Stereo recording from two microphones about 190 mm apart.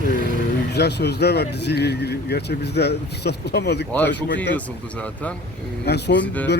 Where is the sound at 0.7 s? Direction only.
60° left (ahead or behind).